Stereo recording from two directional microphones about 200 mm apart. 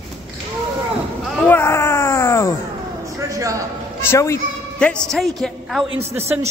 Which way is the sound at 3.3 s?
15° right (ahead or behind).